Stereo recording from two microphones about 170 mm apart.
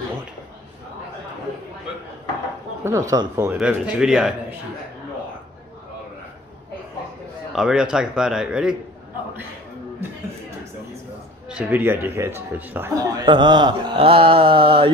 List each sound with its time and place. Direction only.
3.1 s a man's voice: 20° right (ahead or behind)
3.4 s speech: 5° right (ahead or behind)
7.5 s speech: 5° right (ahead or behind)
11.4 s a man's voice: 10° right (ahead or behind); by 14.9 s 30° right (ahead or behind)